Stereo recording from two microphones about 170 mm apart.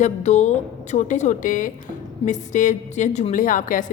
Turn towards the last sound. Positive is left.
turn(degrees=50)  # may be behind; listen again after turning